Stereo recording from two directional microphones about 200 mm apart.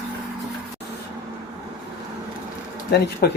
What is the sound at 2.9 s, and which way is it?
Speech, 50° left (ahead or behind).